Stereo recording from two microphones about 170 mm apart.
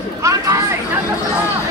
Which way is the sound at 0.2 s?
15° right (ahead or behind).